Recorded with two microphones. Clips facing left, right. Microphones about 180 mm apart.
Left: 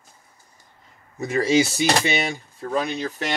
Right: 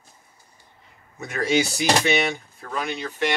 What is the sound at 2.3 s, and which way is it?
Speech, 35° left (ahead or behind).